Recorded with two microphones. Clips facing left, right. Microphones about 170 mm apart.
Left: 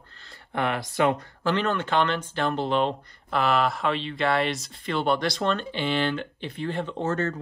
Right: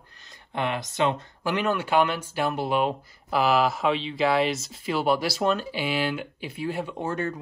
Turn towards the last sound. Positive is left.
turn(degrees=-10)  # may be behind; listen again after turning